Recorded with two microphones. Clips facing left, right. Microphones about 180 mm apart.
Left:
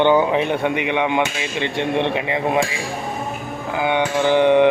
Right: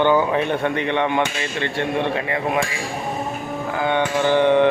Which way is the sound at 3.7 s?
15° left (ahead or behind).